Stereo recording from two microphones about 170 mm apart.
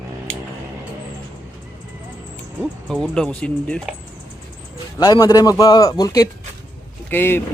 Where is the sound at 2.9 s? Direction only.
5° left (ahead or behind).